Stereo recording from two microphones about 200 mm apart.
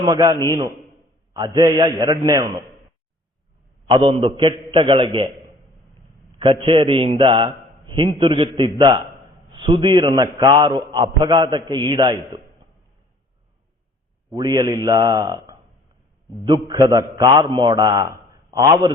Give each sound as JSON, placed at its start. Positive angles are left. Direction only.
{"t": 0.0, "sound": "a man's voice", "side_deg": -20}
{"t": 3.8, "sound": "a man's voice", "side_deg": -25}
{"t": 6.4, "sound": "a man's voice", "side_deg": -25}
{"t": 14.3, "sound": "a man's voice", "side_deg": -20}